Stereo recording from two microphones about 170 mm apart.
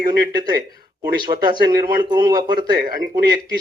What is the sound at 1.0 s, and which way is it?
A man's voice, 25° right (ahead or behind).